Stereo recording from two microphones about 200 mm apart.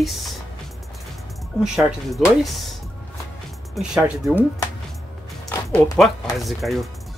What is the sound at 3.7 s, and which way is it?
Speech, 5° right (ahead or behind).